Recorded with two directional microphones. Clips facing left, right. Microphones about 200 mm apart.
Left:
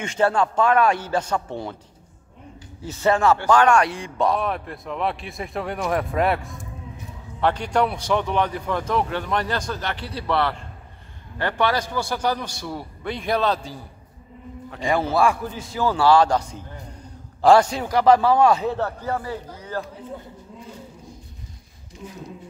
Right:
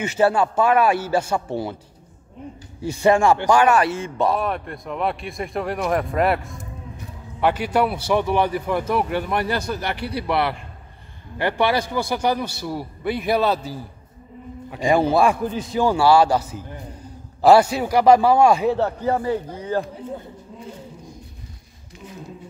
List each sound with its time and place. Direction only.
0.0 s a man's voice: 5° right (ahead or behind)
2.8 s a man's voice: 15° right (ahead or behind)
19.0 s speech: 20° right (ahead or behind)